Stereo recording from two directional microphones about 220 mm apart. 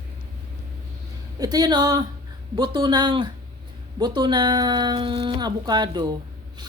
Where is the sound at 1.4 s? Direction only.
15° right (ahead or behind).